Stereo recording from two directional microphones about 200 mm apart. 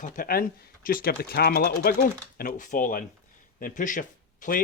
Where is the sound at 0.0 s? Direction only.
40° left (ahead or behind).